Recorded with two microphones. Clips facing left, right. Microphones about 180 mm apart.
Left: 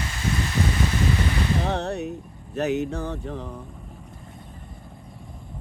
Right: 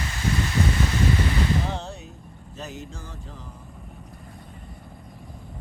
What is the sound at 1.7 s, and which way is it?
Vehicle, 65° left (ahead or behind).